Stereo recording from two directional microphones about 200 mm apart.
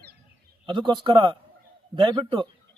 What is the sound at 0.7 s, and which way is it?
Speech, 25° right (ahead or behind).